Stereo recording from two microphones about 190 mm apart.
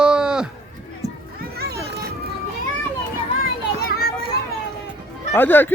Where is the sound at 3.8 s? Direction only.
55° left (ahead or behind).